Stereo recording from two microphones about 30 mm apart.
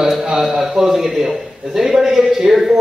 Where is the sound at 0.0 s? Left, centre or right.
Centre.